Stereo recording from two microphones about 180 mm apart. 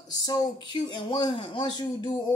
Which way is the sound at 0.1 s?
20° left (ahead or behind).